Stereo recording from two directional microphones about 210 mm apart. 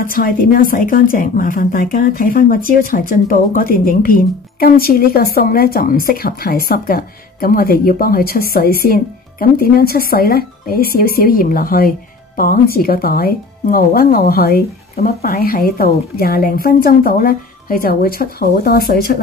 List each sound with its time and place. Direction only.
0.0 s speech: 40° left (ahead or behind)